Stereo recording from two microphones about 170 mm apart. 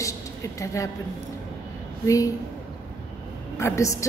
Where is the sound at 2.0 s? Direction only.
20° left (ahead or behind).